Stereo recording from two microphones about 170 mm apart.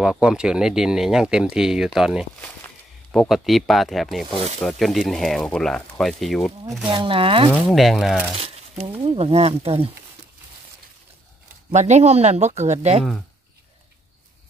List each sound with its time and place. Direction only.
0.0 s speech: 5° right (ahead or behind)
2.4 s speech: 10° left (ahead or behind)
6.9 s speech: 30° right (ahead or behind)
7.5 s speech: centre (ahead or behind)
8.4 s speech: 35° right (ahead or behind)
11.7 s speech: 45° right (ahead or behind)